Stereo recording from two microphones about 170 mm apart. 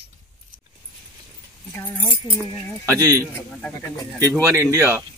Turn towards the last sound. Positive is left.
turn(degrees=-15)  # may be behind; listen again after turning